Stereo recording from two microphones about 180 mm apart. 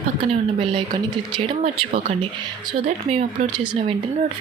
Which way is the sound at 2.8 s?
35° right (ahead or behind).